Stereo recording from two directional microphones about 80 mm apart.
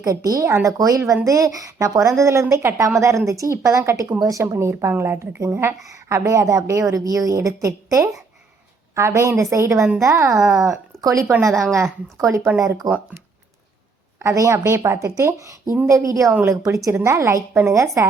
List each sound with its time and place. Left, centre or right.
0.0 s a woman's voice: right
5.8 s a woman's voice: right
11.4 s a woman's voice: centre
12.8 s a woman's voice: right
14.2 s a woman's voice: right